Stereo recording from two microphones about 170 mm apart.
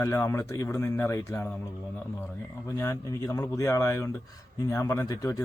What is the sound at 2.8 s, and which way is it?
A man's voice, 20° left (ahead or behind).